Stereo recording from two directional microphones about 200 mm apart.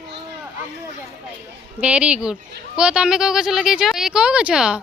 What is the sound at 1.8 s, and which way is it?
Speech, 5° right (ahead or behind).